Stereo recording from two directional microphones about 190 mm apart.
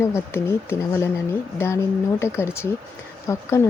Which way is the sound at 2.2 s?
15° left (ahead or behind).